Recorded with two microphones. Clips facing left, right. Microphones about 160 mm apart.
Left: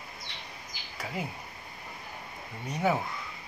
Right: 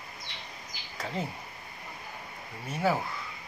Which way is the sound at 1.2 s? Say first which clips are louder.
Right 1 dB; 10° left (ahead or behind).